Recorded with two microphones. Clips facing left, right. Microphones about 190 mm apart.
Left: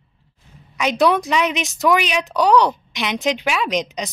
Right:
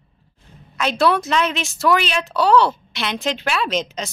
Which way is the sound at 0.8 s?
15° left (ahead or behind).